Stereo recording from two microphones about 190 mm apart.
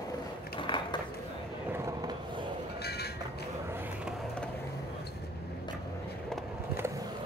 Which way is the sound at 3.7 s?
10° right (ahead or behind).